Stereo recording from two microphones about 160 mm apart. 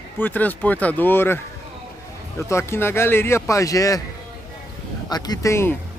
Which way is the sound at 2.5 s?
15° left (ahead or behind).